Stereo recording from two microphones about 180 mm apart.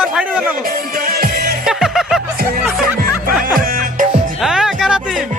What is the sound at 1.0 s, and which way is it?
Music, 55° right (ahead or behind).